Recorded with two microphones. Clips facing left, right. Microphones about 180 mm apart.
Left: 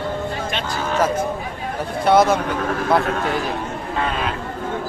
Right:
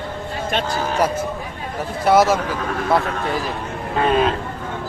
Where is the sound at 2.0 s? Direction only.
5° right (ahead or behind).